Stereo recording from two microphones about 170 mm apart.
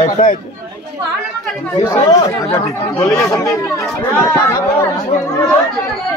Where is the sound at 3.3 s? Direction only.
15° left (ahead or behind).